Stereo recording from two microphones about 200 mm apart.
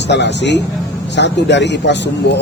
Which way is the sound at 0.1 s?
60° left (ahead or behind).